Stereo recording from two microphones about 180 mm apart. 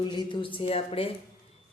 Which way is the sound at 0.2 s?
25° left (ahead or behind).